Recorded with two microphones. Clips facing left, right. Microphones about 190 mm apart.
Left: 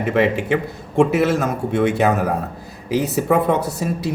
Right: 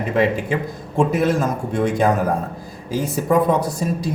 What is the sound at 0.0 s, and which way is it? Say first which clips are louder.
A man's voice: left 1 dB; 70° left (ahead or behind).